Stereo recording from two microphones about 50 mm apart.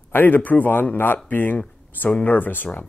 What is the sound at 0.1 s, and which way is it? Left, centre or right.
Speech, left.